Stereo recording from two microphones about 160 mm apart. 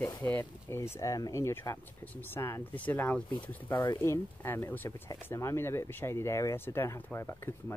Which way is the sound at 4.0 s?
15° left (ahead or behind).